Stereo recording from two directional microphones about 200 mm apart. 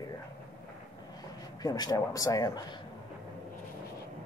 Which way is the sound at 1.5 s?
20° left (ahead or behind).